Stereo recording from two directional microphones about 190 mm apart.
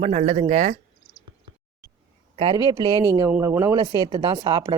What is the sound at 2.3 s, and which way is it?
Speech, 25° right (ahead or behind).